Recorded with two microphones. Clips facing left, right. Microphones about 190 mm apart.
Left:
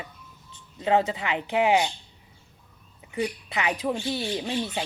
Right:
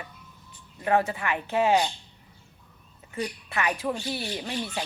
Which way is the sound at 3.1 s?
15° left (ahead or behind).